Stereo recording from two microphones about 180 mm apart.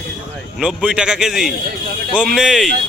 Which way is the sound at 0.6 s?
5° right (ahead or behind).